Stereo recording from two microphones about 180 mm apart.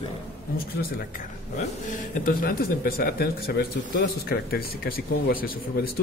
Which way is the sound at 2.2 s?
55° left (ahead or behind).